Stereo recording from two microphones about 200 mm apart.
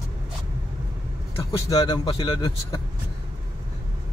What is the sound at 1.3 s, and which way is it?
Speech, 20° left (ahead or behind).